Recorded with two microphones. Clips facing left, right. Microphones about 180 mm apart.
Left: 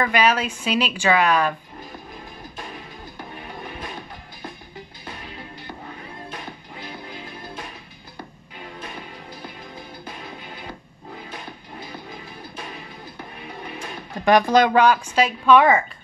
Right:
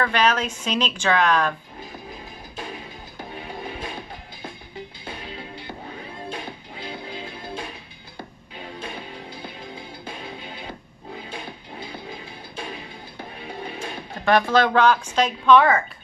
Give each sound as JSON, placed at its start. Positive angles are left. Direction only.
{"t": 0.0, "sound": "speech", "side_deg": 10}
{"t": 6.2, "sound": "music", "side_deg": -30}
{"t": 13.5, "sound": "music", "side_deg": -30}
{"t": 14.2, "sound": "speech", "side_deg": 15}